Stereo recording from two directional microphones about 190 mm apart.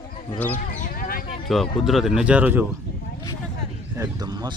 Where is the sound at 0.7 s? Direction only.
45° left (ahead or behind).